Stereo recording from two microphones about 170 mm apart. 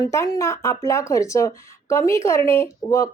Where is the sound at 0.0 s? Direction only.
20° left (ahead or behind).